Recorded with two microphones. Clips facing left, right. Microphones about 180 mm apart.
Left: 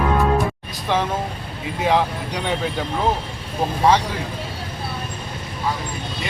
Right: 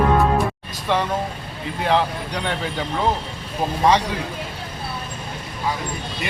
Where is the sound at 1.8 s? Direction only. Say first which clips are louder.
Left 1 dB; 10° left (ahead or behind).